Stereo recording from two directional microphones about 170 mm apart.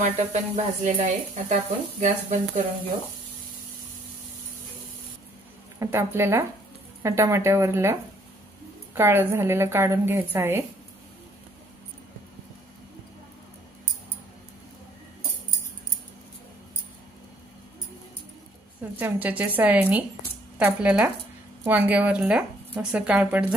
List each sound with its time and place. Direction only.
0.1 s speech: 45° right (ahead or behind)
5.8 s speech: 15° right (ahead or behind)
18.9 s speech: 10° right (ahead or behind)